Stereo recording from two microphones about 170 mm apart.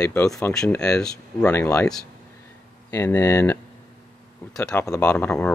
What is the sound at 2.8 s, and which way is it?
Speech, 10° left (ahead or behind).